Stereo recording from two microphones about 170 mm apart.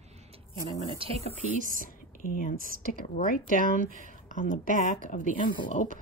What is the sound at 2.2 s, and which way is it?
Speech, 50° left (ahead or behind).